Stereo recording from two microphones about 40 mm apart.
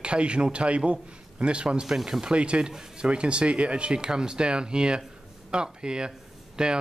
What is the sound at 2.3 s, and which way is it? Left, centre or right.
Speech, right.